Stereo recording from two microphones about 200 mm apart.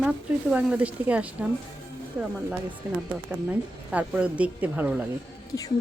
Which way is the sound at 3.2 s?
5° right (ahead or behind).